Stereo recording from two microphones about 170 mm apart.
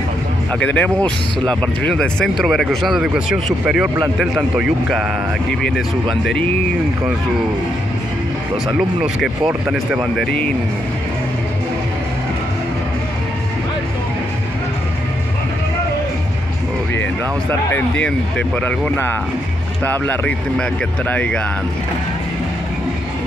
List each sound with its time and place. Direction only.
0.5 s speech: 10° left (ahead or behind)
8.7 s speech: 5° right (ahead or behind)
17.7 s speech: 5° left (ahead or behind)